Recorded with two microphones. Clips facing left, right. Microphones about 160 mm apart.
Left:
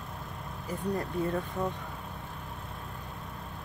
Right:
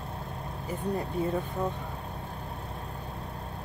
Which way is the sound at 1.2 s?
30° right (ahead or behind).